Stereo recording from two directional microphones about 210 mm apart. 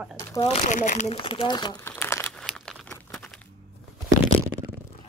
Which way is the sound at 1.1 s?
25° left (ahead or behind).